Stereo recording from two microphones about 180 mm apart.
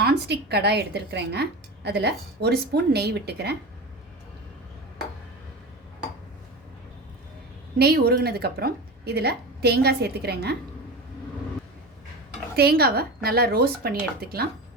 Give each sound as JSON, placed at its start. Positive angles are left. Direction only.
{"t": 0.0, "sound": "a woman's voice", "side_deg": -65}
{"t": 7.8, "sound": "a woman's voice", "side_deg": -60}
{"t": 12.5, "sound": "a woman's voice", "side_deg": -60}